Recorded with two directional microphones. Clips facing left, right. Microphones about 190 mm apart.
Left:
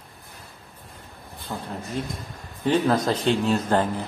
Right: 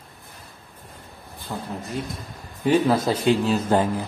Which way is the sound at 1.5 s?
Centre (ahead or behind).